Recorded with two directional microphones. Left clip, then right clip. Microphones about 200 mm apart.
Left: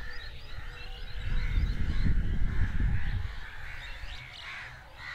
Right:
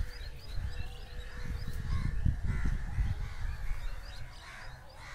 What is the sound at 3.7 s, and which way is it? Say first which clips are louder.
Music: left 7 dB; 50° right (ahead or behind).